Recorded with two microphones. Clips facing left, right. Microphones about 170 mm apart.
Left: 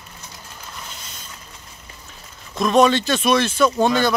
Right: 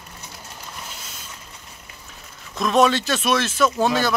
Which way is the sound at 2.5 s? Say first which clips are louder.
Left 2 dB; centre (ahead or behind).